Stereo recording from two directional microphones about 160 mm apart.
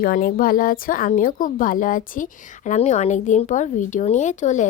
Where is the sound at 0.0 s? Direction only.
65° left (ahead or behind).